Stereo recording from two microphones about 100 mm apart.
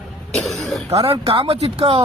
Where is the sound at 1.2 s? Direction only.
75° right (ahead or behind).